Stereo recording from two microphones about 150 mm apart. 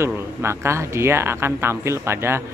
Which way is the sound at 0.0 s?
15° right (ahead or behind).